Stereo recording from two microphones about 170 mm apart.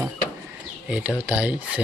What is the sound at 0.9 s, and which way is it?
Speech, 5° right (ahead or behind).